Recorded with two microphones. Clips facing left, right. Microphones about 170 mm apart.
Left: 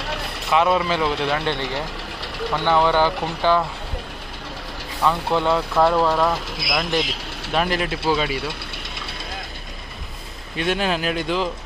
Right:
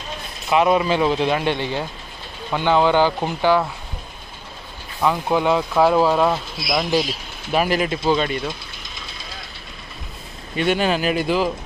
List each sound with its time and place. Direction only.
0.0 s vehicle: 75° left (ahead or behind)
0.5 s speech: 15° right (ahead or behind)
5.0 s speech: 10° right (ahead or behind)
10.5 s speech: centre (ahead or behind)